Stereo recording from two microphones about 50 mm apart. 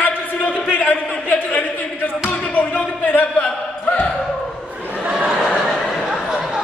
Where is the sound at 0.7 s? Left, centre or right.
Left.